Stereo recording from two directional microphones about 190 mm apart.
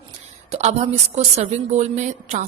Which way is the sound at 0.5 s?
35° right (ahead or behind).